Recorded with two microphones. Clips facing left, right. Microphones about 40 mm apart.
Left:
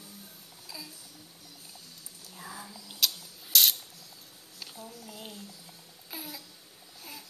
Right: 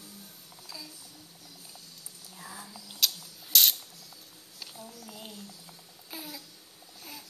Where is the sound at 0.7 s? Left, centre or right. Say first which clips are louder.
Even; centre.